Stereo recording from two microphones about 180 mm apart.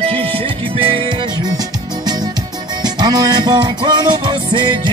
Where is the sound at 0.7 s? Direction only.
30° right (ahead or behind).